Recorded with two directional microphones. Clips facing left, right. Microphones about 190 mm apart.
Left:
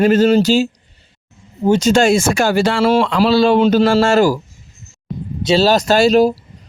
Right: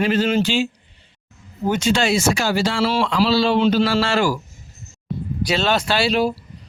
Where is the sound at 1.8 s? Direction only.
45° left (ahead or behind).